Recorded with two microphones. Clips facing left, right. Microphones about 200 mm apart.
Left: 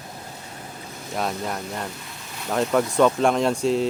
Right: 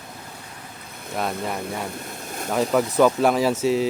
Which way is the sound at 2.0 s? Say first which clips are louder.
Right 6 dB; 50° right (ahead or behind).